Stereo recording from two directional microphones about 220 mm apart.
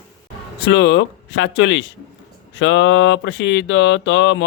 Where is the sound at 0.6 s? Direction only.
55° left (ahead or behind).